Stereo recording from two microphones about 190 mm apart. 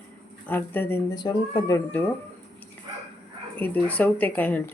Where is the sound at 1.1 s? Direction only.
25° left (ahead or behind).